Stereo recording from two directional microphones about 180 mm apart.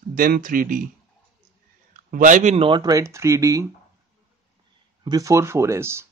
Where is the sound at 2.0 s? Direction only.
50° right (ahead or behind); by 3.6 s 20° right (ahead or behind).